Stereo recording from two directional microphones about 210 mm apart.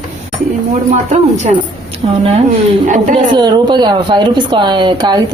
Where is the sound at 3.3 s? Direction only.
20° right (ahead or behind).